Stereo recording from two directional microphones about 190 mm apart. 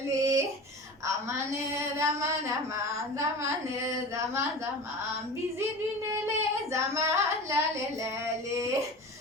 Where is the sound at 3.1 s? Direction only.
15° right (ahead or behind).